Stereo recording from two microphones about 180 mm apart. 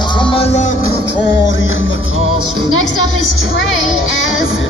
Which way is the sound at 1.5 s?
90° left.